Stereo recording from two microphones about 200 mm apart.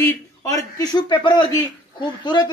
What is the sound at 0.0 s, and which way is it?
A woman's voice, 15° left (ahead or behind).